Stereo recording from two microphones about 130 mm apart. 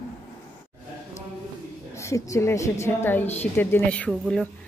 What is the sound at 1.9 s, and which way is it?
A woman's voice, 25° left (ahead or behind).